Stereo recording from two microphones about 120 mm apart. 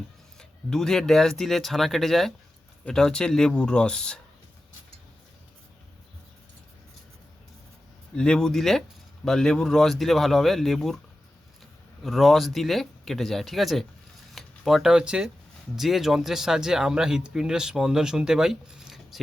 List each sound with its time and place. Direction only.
0.3 s speech: 5° left (ahead or behind)
8.1 s speech: 5° left (ahead or behind)
12.0 s speech: centre (ahead or behind)